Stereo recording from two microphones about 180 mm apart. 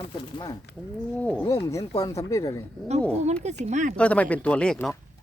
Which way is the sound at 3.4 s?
40° right (ahead or behind).